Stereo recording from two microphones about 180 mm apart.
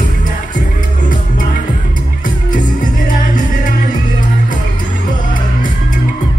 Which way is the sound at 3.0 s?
45° left (ahead or behind).